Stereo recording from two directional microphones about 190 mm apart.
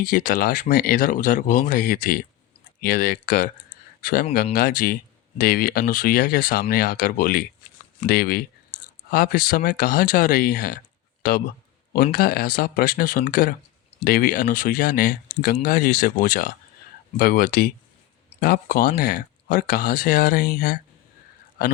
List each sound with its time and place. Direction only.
0.0 s speech: 45° left (ahead or behind)